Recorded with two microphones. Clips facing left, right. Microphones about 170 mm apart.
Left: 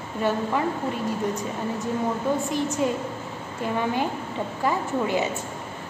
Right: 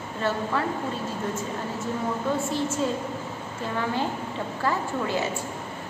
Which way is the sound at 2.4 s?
15° left (ahead or behind).